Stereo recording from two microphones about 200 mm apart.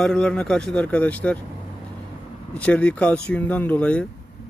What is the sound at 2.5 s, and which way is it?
Speech, 5° left (ahead or behind).